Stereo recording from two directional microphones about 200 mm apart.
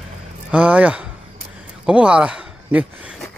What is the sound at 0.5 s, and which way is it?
Speech, 5° right (ahead or behind).